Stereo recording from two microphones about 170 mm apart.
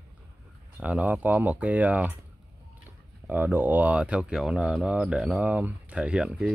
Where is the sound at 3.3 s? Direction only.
10° right (ahead or behind).